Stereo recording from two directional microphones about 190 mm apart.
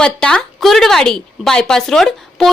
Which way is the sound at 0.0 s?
5° left (ahead or behind).